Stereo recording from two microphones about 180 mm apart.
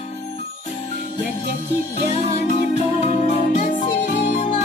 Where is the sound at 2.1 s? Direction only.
40° left (ahead or behind).